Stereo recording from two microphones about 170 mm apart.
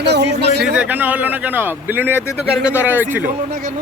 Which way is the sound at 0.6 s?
10° right (ahead or behind).